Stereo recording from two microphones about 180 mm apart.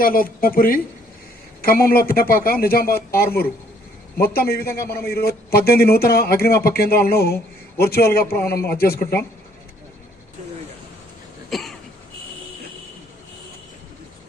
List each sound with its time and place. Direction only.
0.0 s speech: 50° left (ahead or behind)
1.9 s a man's voice: 55° left (ahead or behind)
11.5 s throat clearing: centre (ahead or behind)